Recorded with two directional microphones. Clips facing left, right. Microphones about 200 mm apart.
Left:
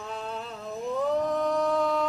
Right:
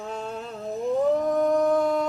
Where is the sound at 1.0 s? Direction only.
50° right (ahead or behind).